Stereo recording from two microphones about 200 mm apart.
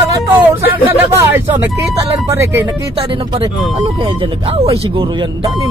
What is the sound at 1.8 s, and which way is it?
Speech, 10° right (ahead or behind).